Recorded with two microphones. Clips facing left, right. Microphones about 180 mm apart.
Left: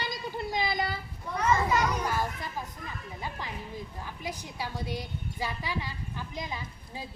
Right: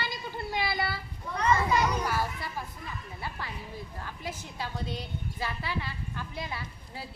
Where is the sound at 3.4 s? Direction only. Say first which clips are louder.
Left 1 dB; 15° left (ahead or behind).